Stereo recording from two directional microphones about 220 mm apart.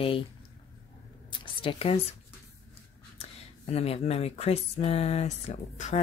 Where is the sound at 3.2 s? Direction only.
30° left (ahead or behind).